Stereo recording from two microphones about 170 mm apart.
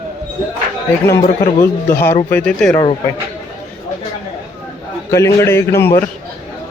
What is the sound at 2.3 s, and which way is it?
Speech, 5° left (ahead or behind).